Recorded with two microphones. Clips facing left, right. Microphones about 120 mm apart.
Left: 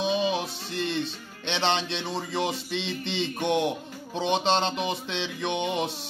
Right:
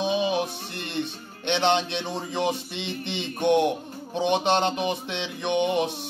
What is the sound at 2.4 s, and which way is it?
Speech, 60° right (ahead or behind).